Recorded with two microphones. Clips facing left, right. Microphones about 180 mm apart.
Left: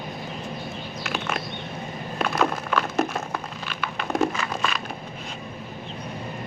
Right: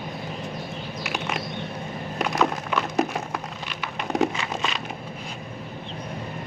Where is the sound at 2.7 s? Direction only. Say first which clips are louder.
Even; 15° right (ahead or behind).